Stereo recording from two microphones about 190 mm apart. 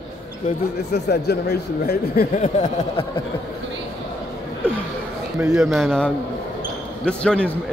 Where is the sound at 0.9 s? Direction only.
60° left (ahead or behind).